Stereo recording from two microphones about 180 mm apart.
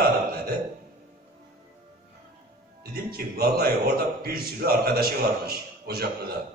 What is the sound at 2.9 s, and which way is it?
A man's voice, 55° right (ahead or behind).